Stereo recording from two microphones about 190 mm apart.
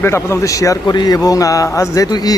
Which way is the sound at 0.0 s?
15° left (ahead or behind).